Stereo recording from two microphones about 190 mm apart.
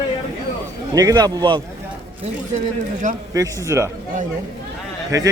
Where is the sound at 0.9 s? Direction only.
20° right (ahead or behind).